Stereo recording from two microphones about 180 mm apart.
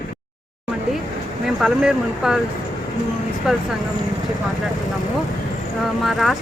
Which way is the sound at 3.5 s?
5° right (ahead or behind).